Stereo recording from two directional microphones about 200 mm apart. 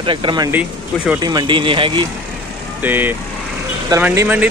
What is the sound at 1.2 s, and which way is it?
Speech, 20° right (ahead or behind).